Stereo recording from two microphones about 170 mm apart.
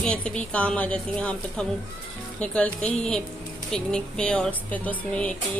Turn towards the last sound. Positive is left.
turn(degrees=10)  # may be behind; listen again after turning